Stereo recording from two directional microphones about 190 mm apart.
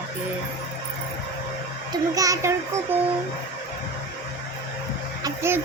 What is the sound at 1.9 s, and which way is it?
Child singing, 20° right (ahead or behind).